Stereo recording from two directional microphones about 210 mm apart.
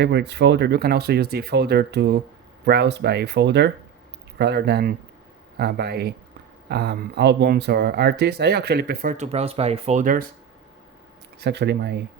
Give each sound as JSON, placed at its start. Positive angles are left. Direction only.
{"t": 0.0, "sound": "speech", "side_deg": -55}
{"t": 11.3, "sound": "speech", "side_deg": -55}